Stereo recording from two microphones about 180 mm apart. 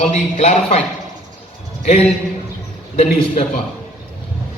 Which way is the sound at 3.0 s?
35° left (ahead or behind).